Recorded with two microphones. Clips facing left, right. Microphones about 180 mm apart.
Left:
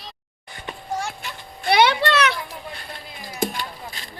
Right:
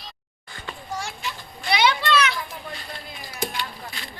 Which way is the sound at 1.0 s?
55° left (ahead or behind).